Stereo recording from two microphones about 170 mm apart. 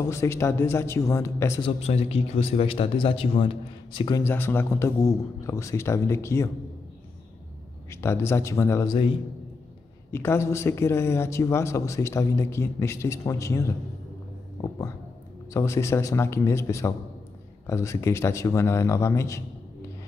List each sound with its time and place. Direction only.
0.1 s speech: 15° left (ahead or behind)
1.6 s a man's voice: 35° left (ahead or behind)
4.2 s speech: 15° left (ahead or behind)
7.9 s speech: 15° left (ahead or behind)
10.1 s speech: 15° left (ahead or behind)